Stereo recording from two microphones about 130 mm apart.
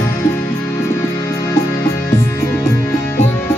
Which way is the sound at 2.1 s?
20° left (ahead or behind).